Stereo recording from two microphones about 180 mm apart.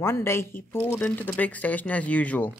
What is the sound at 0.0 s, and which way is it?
Speech, 15° left (ahead or behind).